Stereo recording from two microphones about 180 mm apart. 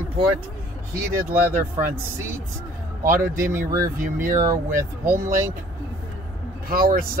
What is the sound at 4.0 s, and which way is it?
Speech, 50° right (ahead or behind).